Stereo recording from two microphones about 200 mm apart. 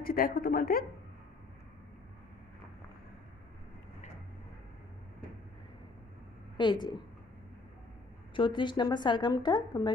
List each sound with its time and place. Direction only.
0.0 s speech: 45° left (ahead or behind)
6.5 s a woman's voice: 20° left (ahead or behind)
8.4 s a woman's voice: 25° left (ahead or behind)